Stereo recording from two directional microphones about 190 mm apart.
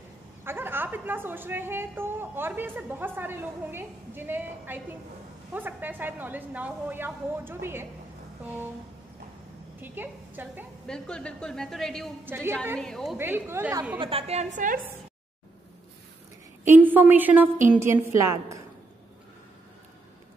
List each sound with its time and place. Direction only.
0.4 s a woman's voice: 10° right (ahead or behind)
9.8 s a woman's voice: 10° right (ahead or behind)
10.9 s a woman's voice: 5° left (ahead or behind)
12.3 s a woman's voice: 10° right (ahead or behind)
12.7 s a woman's voice: centre (ahead or behind)
13.2 s a woman's voice: 10° right (ahead or behind)
13.9 s a woman's voice: 30° right (ahead or behind)
16.6 s a woman's voice: 10° right (ahead or behind)